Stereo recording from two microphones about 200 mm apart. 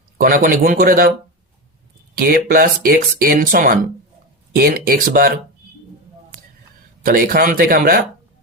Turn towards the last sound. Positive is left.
turn(degrees=-50)  # may be behind; listen again after turning